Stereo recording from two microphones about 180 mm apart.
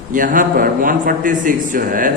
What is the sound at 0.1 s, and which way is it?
A man's voice, 50° right (ahead or behind).